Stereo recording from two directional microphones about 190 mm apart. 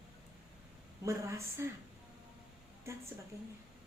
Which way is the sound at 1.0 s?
15° right (ahead or behind).